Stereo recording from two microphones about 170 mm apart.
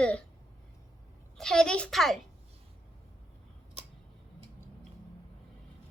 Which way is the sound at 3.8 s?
40° right (ahead or behind).